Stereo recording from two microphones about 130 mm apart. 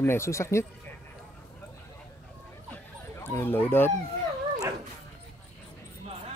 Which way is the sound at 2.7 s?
20° left (ahead or behind).